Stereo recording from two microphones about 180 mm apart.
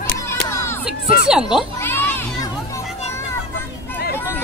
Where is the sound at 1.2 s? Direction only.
5° right (ahead or behind).